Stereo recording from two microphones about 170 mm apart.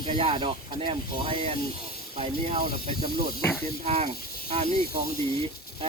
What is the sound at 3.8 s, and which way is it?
Speech, 35° right (ahead or behind).